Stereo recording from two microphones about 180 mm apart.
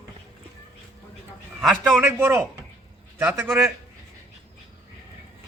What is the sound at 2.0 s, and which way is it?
A man's voice, 10° right (ahead or behind).